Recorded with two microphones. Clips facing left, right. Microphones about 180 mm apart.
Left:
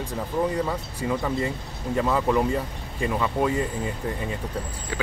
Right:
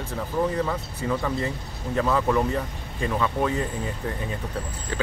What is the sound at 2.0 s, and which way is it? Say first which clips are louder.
Speech: even; 5° left (ahead or behind).